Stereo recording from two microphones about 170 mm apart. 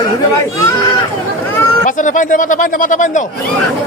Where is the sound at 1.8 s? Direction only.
50° left (ahead or behind).